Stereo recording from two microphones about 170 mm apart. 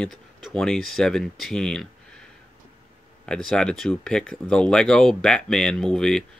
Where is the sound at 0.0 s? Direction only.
Centre (ahead or behind).